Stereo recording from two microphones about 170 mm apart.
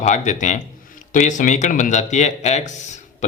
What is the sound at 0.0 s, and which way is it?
Speech, 45° left (ahead or behind).